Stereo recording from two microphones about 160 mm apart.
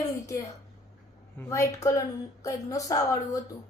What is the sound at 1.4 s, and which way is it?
A woman's voice, 20° left (ahead or behind).